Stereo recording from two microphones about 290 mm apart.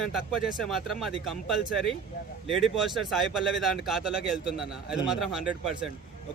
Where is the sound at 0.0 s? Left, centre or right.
Centre.